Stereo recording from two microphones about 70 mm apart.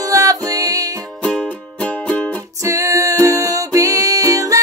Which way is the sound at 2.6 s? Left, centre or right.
Right.